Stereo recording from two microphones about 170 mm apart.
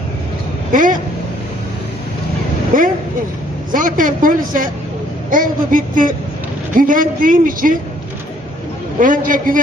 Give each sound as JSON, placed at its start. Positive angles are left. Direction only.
{"t": 0.7, "sound": "a sound", "side_deg": -50}
{"t": 2.7, "sound": "a woman's voice", "side_deg": -50}
{"t": 9.0, "sound": "a woman's voice", "side_deg": -55}